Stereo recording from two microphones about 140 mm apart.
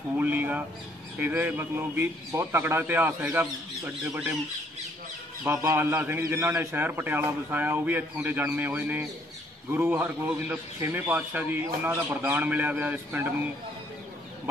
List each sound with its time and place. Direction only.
0.2 s a man's voice: 15° right (ahead or behind)
5.4 s a man's voice: 15° right (ahead or behind)